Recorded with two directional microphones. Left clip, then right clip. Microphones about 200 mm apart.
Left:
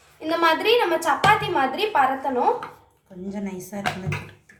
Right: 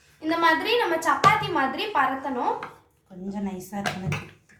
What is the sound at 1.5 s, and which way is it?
Speech, 25° left (ahead or behind).